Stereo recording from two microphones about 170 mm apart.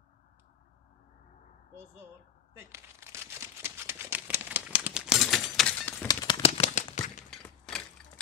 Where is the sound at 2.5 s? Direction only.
15° right (ahead or behind); by 5.9 s 5° left (ahead or behind).